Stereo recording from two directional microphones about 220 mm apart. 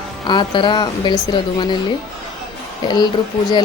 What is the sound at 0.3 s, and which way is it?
Speech, 20° left (ahead or behind).